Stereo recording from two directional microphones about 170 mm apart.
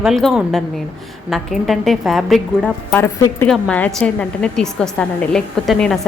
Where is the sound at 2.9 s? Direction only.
15° left (ahead or behind).